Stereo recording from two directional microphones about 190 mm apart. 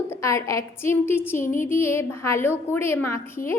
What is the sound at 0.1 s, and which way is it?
A woman's voice, 15° left (ahead or behind).